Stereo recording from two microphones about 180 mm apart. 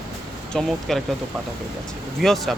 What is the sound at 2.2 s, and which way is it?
Speech, centre (ahead or behind).